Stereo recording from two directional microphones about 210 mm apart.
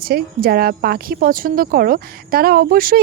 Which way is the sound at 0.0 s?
45° right (ahead or behind).